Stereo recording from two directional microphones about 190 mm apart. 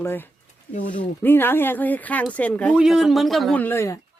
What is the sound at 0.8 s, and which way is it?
Speech, 45° left (ahead or behind).